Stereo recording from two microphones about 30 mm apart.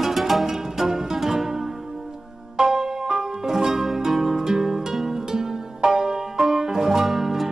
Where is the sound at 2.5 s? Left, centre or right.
Centre.